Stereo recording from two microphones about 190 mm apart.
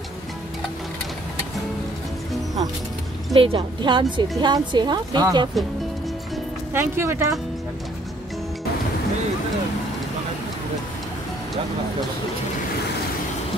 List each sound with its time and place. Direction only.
3.3 s a woman's voice: 25° right (ahead or behind)
6.7 s speech: 15° right (ahead or behind)